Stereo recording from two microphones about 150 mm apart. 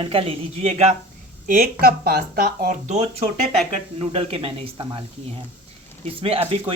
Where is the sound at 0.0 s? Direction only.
40° right (ahead or behind).